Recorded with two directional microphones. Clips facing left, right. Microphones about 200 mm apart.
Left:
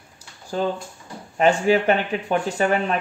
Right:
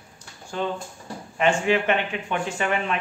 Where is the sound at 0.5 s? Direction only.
40° left (ahead or behind).